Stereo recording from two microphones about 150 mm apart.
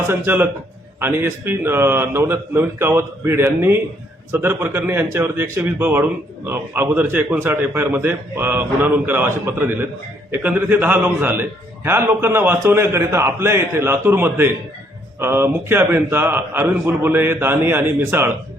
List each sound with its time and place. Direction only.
0.1 s a man's voice: 15° right (ahead or behind)